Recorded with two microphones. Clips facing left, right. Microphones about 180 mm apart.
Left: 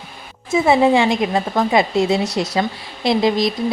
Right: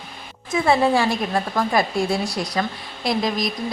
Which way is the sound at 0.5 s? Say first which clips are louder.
Left 4 dB; 20° left (ahead or behind).